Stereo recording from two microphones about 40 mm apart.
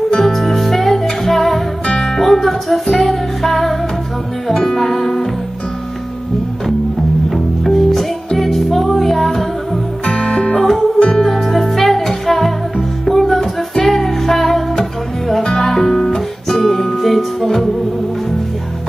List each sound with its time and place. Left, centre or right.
0.2 s music: centre
7.2 s music: centre
7.7 s music: centre
10.0 s music: centre
10.6 s music: centre